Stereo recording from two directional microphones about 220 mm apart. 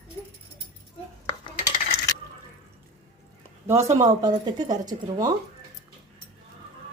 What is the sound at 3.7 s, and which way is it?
Speech, 15° right (ahead or behind).